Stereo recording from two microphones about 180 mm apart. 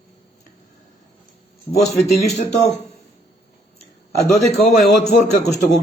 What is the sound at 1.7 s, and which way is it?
Speech, 35° left (ahead or behind).